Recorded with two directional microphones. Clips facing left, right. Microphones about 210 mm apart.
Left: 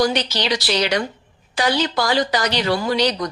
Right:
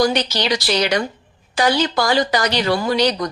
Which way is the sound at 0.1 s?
45° right (ahead or behind).